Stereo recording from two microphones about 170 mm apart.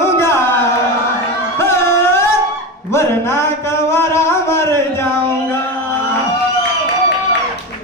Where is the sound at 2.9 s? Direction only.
15° left (ahead or behind).